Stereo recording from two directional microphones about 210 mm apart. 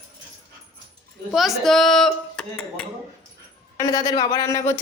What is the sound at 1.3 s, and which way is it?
Speech, centre (ahead or behind).